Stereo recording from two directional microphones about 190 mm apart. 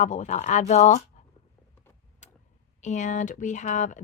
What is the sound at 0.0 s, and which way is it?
Speech, 40° left (ahead or behind).